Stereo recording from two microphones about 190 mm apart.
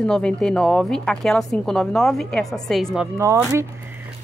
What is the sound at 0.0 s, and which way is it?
Speech, 5° left (ahead or behind).